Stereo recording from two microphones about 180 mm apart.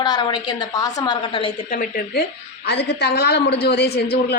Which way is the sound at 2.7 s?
65° left (ahead or behind).